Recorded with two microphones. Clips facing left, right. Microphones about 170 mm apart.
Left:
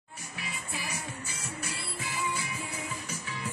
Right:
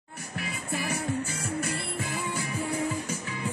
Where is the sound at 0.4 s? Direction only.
55° right (ahead or behind).